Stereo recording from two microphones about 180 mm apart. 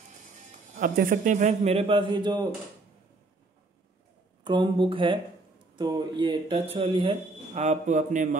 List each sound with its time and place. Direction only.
0.7 s speech: 50° right (ahead or behind); by 2.4 s 25° right (ahead or behind)
4.5 s speech: 25° right (ahead or behind); by 8.4 s 45° right (ahead or behind)